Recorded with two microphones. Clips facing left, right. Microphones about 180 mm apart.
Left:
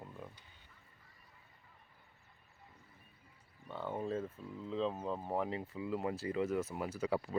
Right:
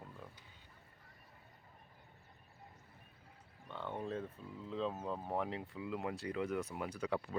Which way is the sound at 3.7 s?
10° left (ahead or behind).